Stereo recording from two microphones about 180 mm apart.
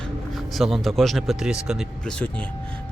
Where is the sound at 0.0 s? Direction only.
Centre (ahead or behind).